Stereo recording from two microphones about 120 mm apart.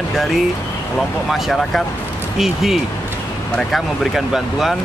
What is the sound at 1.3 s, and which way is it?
Speech, centre (ahead or behind).